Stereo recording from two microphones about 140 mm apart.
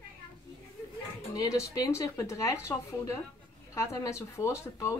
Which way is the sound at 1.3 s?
25° left (ahead or behind).